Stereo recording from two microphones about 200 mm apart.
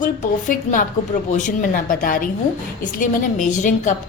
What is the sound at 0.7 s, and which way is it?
A woman's voice, 40° left (ahead or behind).